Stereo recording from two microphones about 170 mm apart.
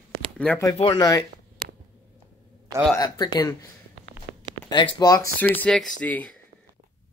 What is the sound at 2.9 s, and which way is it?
Speech, 25° left (ahead or behind).